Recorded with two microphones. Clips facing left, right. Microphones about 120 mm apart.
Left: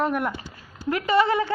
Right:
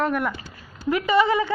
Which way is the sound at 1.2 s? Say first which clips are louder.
Even; 5° right (ahead or behind).